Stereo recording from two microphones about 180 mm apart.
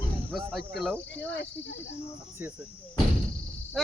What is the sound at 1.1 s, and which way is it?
Speech, 75° left (ahead or behind).